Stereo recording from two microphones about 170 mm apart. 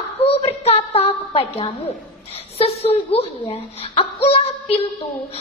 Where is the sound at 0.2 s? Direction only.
35° left (ahead or behind).